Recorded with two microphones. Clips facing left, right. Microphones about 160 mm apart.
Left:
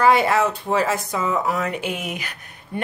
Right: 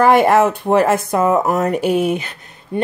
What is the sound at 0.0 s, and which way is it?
Speech, 55° right (ahead or behind).